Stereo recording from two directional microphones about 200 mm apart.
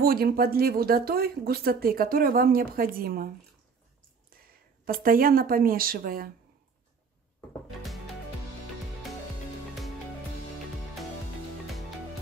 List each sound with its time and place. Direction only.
0.0 s speech: 50° right (ahead or behind)
4.8 s speech: 45° right (ahead or behind)